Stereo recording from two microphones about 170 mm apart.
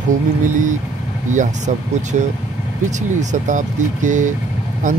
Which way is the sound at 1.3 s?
45° right (ahead or behind).